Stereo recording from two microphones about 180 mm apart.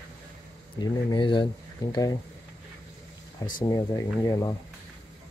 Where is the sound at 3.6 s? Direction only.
20° left (ahead or behind).